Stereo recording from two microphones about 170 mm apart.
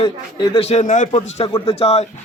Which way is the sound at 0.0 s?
30° left (ahead or behind).